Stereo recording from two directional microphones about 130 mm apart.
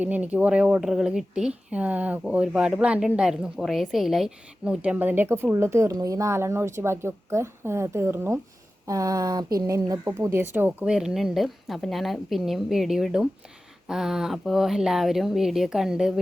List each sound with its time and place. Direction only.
0.0 s a woman's voice: 10° right (ahead or behind)